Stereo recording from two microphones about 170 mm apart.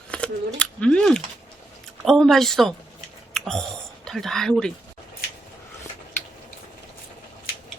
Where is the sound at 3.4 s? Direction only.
5° left (ahead or behind).